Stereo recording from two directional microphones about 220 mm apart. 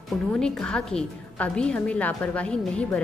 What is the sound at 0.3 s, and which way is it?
A woman's voice, 5° left (ahead or behind).